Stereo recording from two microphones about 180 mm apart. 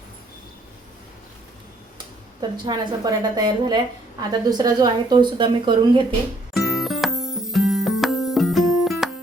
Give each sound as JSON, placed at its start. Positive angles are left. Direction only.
{"t": 2.4, "sound": "a woman's voice", "side_deg": -20}
{"t": 6.5, "sound": "music", "side_deg": 0}